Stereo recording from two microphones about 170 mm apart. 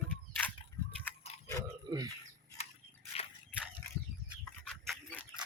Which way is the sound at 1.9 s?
25° right (ahead or behind).